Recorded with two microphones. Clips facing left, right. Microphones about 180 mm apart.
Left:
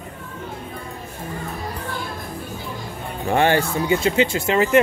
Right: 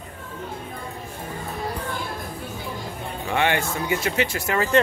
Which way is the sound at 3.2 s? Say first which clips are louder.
Left 5 dB; 40° left (ahead or behind).